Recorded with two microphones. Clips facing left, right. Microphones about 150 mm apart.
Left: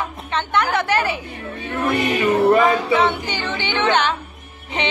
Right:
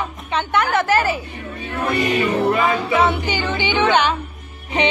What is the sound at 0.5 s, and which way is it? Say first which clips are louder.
Speech: right 2 dB; centre (ahead or behind).